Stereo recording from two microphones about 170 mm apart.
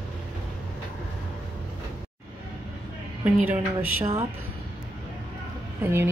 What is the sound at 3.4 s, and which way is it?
Speech, 10° right (ahead or behind).